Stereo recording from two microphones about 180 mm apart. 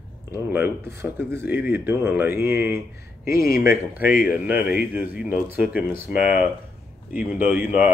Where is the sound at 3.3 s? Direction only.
55° left (ahead or behind).